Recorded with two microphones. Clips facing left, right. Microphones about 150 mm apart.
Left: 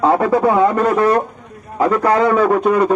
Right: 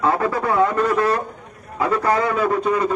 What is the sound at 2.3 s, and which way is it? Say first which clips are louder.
Speech: left 6 dB; 60° left (ahead or behind).